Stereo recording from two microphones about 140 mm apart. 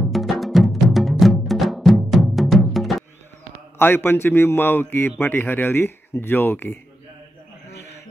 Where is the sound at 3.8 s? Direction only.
15° left (ahead or behind).